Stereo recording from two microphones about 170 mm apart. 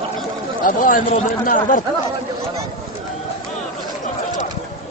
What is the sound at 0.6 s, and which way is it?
Speech, 50° left (ahead or behind).